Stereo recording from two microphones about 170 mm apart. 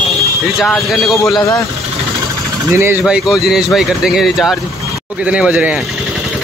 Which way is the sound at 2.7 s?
15° right (ahead or behind).